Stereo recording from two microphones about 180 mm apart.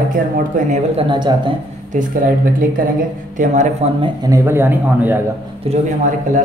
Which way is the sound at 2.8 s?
50° right (ahead or behind).